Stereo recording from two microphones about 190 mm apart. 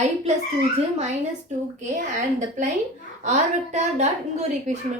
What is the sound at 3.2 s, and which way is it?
A woman's voice, 35° right (ahead or behind).